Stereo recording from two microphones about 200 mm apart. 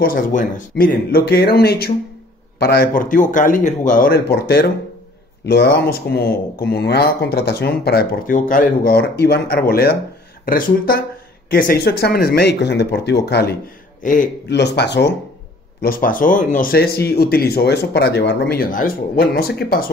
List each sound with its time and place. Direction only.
0.0 s speech: 45° left (ahead or behind)
14.0 s a man's voice: 40° left (ahead or behind)
14.5 s speech: 60° left (ahead or behind)
15.8 s speech: 45° left (ahead or behind)